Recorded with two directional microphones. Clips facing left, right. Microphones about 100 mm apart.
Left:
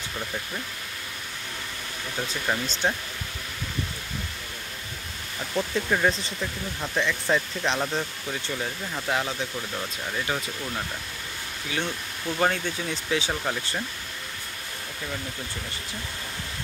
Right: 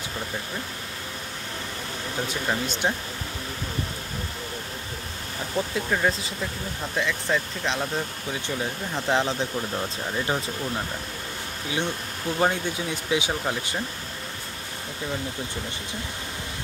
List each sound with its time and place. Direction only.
2.4 s speech: 15° right (ahead or behind)
5.6 s speech: centre (ahead or behind)
8.9 s speech: 25° right (ahead or behind)
11.7 s speech: 15° right (ahead or behind)